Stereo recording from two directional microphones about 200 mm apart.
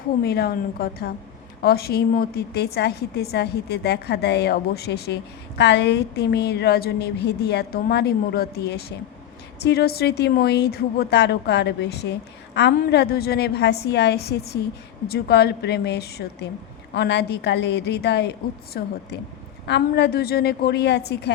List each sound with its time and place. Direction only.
0.2 s a woman's voice: 50° left (ahead or behind)